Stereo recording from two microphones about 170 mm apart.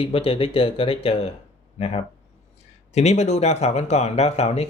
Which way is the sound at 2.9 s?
40° left (ahead or behind).